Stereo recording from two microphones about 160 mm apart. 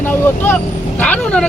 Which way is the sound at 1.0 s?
10° left (ahead or behind).